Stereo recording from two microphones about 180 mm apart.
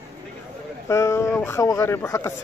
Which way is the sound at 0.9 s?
15° left (ahead or behind).